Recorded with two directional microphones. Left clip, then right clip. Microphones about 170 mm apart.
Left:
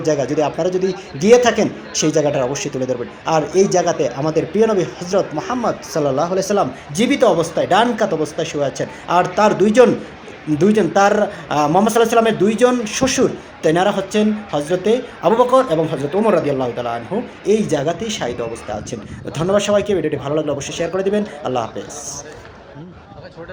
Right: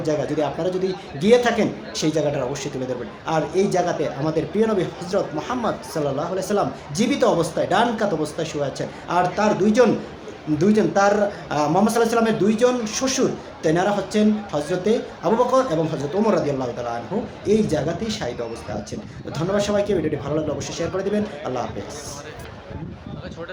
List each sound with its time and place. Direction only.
0.3 s a man's voice: 20° left (ahead or behind)
19.4 s a man's voice: 25° left (ahead or behind)